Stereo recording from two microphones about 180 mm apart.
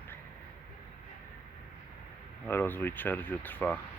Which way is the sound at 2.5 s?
10° left (ahead or behind).